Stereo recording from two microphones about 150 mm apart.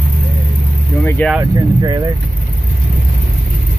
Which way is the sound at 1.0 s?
10° left (ahead or behind).